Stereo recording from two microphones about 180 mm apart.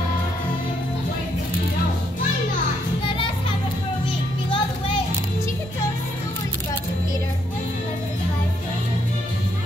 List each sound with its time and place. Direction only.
4.5 s music: 30° left (ahead or behind)